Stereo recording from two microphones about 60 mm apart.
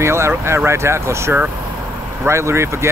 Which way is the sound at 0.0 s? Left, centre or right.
Right.